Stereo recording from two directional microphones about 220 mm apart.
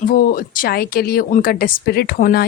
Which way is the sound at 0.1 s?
40° left (ahead or behind).